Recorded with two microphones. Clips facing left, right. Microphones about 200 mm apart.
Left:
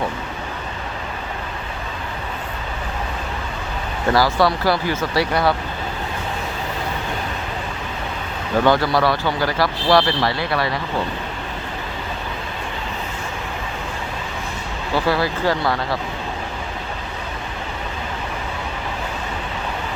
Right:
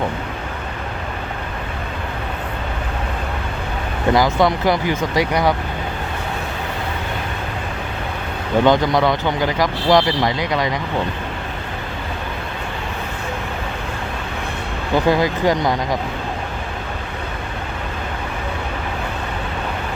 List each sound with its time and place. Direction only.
4.1 s speech: 20° right (ahead or behind)
8.6 s speech: 20° right (ahead or behind)
14.9 s speech: 15° right (ahead or behind)